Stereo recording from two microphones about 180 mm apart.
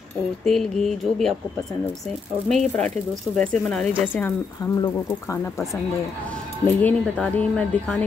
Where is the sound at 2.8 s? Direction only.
5° left (ahead or behind).